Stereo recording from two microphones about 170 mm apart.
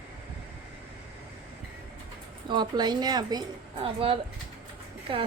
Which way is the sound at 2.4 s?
25° right (ahead or behind).